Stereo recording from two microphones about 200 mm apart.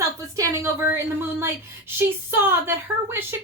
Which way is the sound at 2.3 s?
10° right (ahead or behind).